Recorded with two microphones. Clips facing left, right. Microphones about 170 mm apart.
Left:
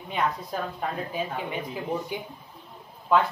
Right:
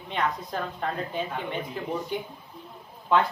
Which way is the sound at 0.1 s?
5° left (ahead or behind).